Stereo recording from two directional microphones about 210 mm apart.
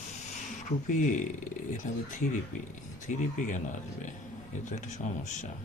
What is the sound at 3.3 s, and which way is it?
Speech, 40° left (ahead or behind).